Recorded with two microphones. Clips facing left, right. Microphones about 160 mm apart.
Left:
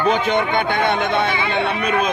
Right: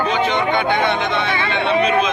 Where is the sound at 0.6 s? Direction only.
55° left (ahead or behind).